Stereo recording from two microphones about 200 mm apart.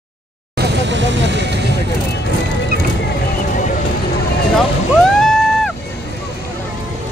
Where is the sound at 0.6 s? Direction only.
60° right (ahead or behind).